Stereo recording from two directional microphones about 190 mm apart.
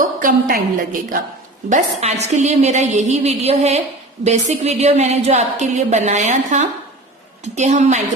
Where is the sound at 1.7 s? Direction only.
35° right (ahead or behind).